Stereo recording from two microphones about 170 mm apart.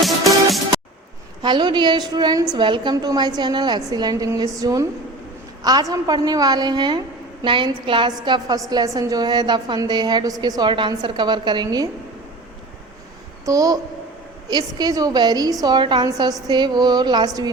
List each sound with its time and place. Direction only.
0.0 s music: centre (ahead or behind)
1.4 s a woman's voice: 25° right (ahead or behind)
13.4 s a woman's voice: 20° right (ahead or behind)